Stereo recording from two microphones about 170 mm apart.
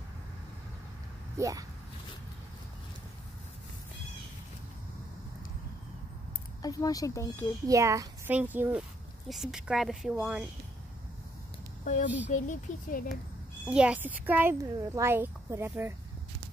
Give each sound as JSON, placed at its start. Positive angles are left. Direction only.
{"t": 1.4, "sound": "a child's voice", "side_deg": -20}
{"t": 6.6, "sound": "speech", "side_deg": 20}
{"t": 7.6, "sound": "a child's voice", "side_deg": -20}
{"t": 11.8, "sound": "a child's voice", "side_deg": 45}
{"t": 13.7, "sound": "speech", "side_deg": -5}